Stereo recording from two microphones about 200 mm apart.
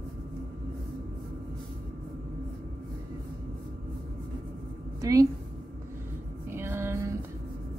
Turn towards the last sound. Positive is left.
turn(degrees=-15)  # may be behind; listen again after turning